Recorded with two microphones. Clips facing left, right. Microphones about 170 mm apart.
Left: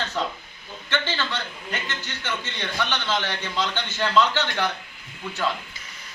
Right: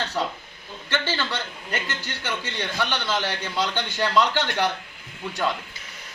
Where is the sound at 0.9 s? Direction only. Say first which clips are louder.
Right 1 dB; 10° right (ahead or behind).